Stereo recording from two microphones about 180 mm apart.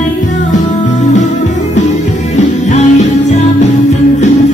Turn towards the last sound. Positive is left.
turn(degrees=40)  # may be behind; listen again after turning